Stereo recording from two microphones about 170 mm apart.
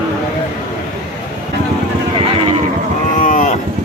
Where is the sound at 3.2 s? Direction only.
50° left (ahead or behind).